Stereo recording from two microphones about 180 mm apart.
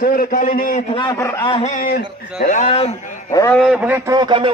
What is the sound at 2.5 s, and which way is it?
Speech, 40° left (ahead or behind).